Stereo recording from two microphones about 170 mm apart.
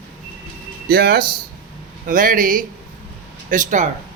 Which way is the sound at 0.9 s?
65° right (ahead or behind).